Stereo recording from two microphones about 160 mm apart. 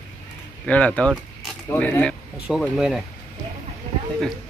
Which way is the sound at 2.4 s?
5° right (ahead or behind).